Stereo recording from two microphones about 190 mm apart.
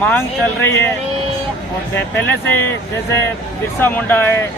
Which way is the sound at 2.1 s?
10° left (ahead or behind).